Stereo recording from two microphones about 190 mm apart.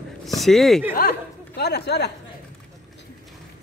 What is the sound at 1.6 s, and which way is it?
Speech, 60° left (ahead or behind).